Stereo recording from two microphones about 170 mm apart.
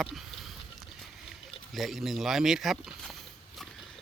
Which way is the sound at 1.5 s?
Centre (ahead or behind).